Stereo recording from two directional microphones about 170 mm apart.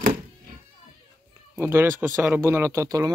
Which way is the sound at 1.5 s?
15° right (ahead or behind).